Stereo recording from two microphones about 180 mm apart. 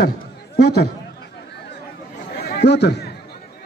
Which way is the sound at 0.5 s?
65° left (ahead or behind).